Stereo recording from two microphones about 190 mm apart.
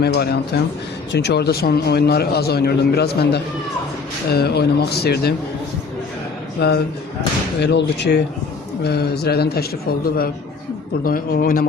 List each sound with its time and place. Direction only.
0.0 s a man's voice: 60° left (ahead or behind)
6.6 s a man's voice: 60° left (ahead or behind)